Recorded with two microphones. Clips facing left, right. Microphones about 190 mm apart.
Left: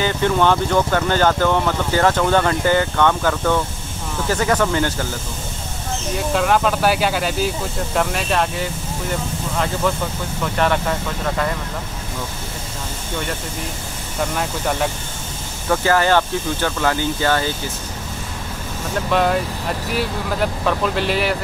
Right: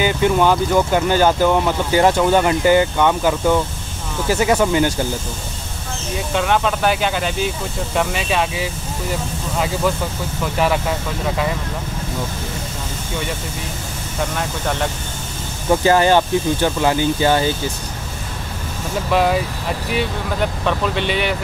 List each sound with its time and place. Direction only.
0.0 s speech: 10° right (ahead or behind)
6.1 s speech: centre (ahead or behind)
10.4 s speech: 5° right (ahead or behind)
14.3 s speech: 5° left (ahead or behind)
15.7 s speech: 20° right (ahead or behind)
19.0 s speech: 5° right (ahead or behind)